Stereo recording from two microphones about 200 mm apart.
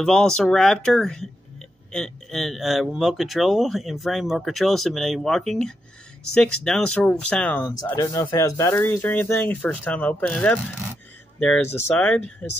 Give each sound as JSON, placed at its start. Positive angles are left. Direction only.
{"t": 0.0, "sound": "speech", "side_deg": 5}
{"t": 7.6, "sound": "speech", "side_deg": 20}